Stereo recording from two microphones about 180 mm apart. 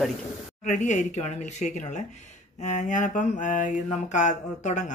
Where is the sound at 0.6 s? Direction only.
40° left (ahead or behind).